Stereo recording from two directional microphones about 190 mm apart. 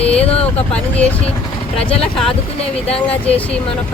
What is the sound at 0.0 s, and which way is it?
Vehicle, 5° left (ahead or behind).